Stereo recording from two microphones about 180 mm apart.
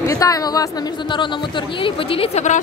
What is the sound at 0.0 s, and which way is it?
Speech, 20° left (ahead or behind).